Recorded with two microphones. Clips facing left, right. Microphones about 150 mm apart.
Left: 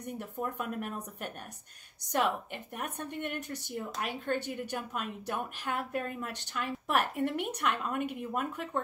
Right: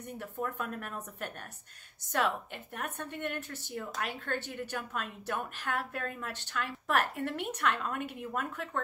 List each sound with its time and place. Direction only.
0.0 s a woman's voice: 15° left (ahead or behind)